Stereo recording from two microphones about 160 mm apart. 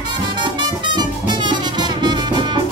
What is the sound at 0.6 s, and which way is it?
Music, 30° right (ahead or behind).